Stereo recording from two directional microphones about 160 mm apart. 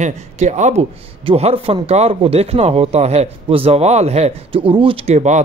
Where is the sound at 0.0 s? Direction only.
45° right (ahead or behind).